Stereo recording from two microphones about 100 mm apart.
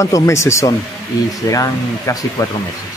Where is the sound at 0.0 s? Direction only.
30° left (ahead or behind).